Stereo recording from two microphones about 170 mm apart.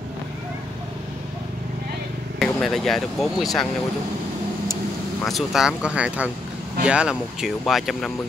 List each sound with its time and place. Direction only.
2.3 s speech: centre (ahead or behind)
5.2 s speech: centre (ahead or behind)